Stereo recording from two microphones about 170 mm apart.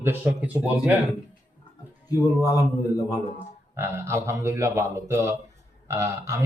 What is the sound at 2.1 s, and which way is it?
Speech, 20° left (ahead or behind).